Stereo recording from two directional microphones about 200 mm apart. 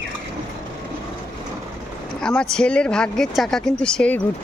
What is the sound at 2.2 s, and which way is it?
Speech, 5° left (ahead or behind).